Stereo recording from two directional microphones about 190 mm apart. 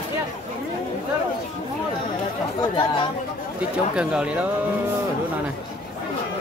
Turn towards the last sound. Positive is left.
turn(degrees=-5)  # may be behind; listen again after turning